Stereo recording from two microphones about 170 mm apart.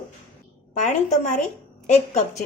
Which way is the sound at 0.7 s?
45° left (ahead or behind).